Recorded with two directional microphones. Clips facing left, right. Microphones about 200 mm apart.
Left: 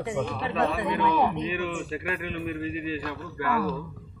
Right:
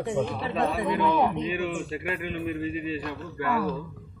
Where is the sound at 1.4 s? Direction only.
25° right (ahead or behind).